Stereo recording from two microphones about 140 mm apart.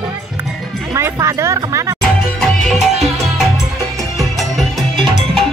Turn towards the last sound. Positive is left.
turn(degrees=0)  # may be behind; listen again after turning